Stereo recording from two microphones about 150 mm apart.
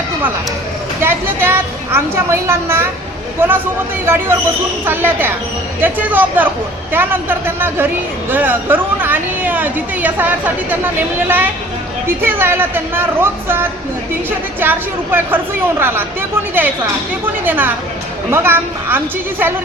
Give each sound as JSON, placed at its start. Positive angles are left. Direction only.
{"t": 1.0, "sound": "speech", "side_deg": -15}
{"t": 12.0, "sound": "speech", "side_deg": -15}